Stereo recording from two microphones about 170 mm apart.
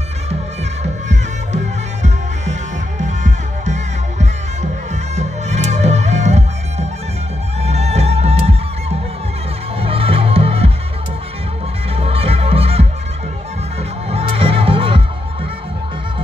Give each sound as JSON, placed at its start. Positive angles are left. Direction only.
{"t": 3.0, "sound": "music", "side_deg": -45}
{"t": 7.6, "sound": "music", "side_deg": -40}
{"t": 12.0, "sound": "music", "side_deg": -35}
{"t": 14.1, "sound": "music", "side_deg": -35}